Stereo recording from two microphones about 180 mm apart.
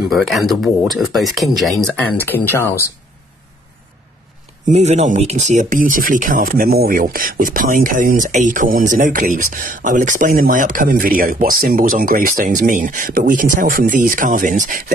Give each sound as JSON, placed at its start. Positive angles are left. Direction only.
{"t": 0.1, "sound": "speech", "side_deg": 0}
{"t": 4.6, "sound": "speech", "side_deg": -35}